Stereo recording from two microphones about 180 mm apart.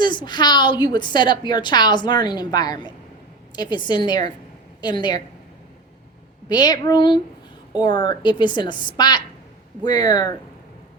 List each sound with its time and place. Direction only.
0.0 s a woman's voice: 25° left (ahead or behind)
6.5 s a woman's voice: 25° left (ahead or behind)